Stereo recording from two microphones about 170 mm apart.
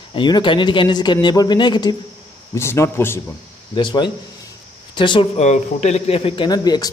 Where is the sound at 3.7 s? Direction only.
30° left (ahead or behind).